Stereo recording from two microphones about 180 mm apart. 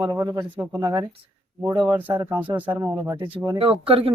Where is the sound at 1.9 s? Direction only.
10° right (ahead or behind).